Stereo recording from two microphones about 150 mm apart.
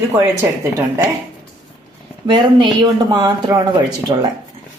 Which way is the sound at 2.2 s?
30° right (ahead or behind).